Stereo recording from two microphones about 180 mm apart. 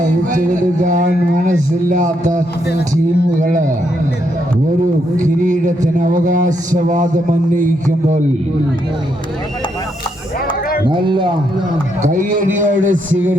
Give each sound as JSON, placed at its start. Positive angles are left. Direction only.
{"t": 0.0, "sound": "a man's voice", "side_deg": -45}
{"t": 5.1, "sound": "a man's voice", "side_deg": -45}
{"t": 10.8, "sound": "speech", "side_deg": -25}
{"t": 12.0, "sound": "a man's voice", "side_deg": -45}